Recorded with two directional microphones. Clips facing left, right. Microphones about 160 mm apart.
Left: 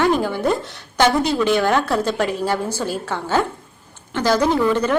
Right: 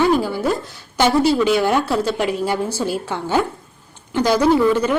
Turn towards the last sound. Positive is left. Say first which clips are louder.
# right 3 dB
turn(degrees=-10)  # may be behind; listen again after turning